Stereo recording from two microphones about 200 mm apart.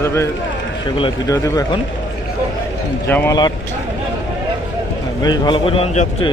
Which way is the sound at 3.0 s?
10° left (ahead or behind).